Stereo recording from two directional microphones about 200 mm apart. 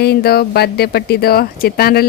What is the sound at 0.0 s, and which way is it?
Speech, 50° left (ahead or behind).